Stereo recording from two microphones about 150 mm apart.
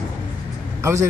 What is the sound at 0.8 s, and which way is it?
Speech, 20° right (ahead or behind).